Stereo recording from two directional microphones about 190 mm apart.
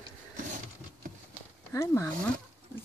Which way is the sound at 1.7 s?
15° left (ahead or behind).